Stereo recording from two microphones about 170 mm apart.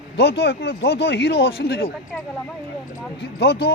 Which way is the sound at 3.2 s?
70° left (ahead or behind).